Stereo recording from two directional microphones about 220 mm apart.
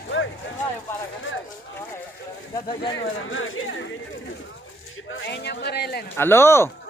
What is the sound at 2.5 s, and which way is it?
Speech, 20° left (ahead or behind).